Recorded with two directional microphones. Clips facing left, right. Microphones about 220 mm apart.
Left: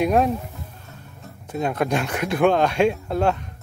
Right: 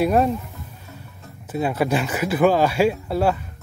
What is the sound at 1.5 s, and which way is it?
Speech, 5° right (ahead or behind).